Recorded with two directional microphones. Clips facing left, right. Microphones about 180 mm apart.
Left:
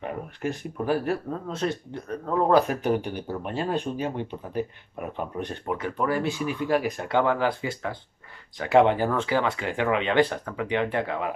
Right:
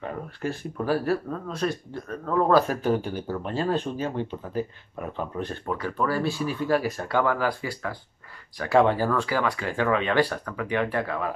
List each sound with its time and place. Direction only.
0.0 s speech: 15° left (ahead or behind)